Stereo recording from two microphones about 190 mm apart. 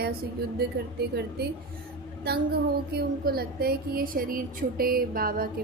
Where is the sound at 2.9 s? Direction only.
55° right (ahead or behind).